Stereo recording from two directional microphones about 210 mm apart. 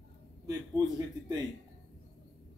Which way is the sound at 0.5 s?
15° right (ahead or behind).